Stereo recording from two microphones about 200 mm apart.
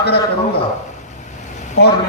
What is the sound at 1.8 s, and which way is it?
Speech, 55° left (ahead or behind).